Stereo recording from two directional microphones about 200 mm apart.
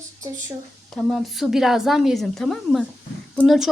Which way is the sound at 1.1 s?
Centre (ahead or behind).